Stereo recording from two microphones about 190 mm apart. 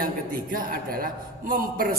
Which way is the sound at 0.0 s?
50° right (ahead or behind).